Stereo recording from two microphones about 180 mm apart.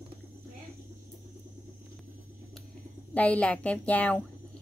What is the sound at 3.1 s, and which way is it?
A woman's voice, 10° left (ahead or behind).